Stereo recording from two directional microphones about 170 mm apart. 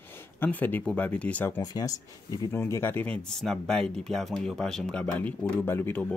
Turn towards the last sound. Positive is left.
turn(degrees=10)  # may be behind; listen again after turning